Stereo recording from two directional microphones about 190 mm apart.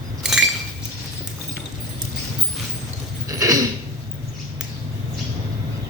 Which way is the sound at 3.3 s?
20° right (ahead or behind).